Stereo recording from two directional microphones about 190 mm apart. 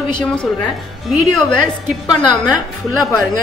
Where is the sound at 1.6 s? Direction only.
25° left (ahead or behind).